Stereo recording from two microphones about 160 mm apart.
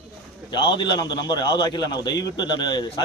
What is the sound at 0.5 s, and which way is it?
A man's voice, 30° left (ahead or behind).